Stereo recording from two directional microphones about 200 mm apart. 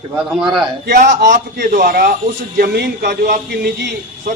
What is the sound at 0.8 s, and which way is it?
A man's voice, 45° right (ahead or behind).